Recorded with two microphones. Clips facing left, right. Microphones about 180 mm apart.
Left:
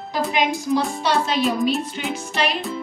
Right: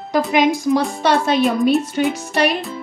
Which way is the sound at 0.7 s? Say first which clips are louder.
Right 4 dB; 60° right (ahead or behind).